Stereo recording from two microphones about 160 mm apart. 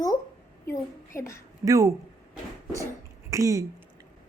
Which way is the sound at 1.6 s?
20° right (ahead or behind).